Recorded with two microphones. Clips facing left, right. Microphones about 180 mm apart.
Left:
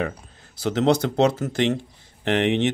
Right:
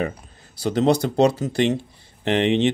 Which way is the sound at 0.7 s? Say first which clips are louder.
Right 1 dB; 10° right (ahead or behind).